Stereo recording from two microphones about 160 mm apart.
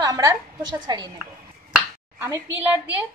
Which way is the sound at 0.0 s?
20° right (ahead or behind).